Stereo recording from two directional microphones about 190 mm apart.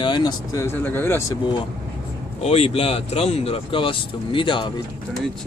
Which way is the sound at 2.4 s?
30° left (ahead or behind).